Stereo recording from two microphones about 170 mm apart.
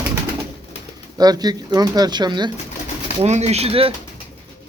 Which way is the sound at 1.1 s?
25° right (ahead or behind).